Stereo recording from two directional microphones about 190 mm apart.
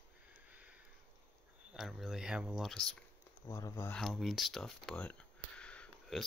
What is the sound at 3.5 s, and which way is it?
Speech, 15° left (ahead or behind).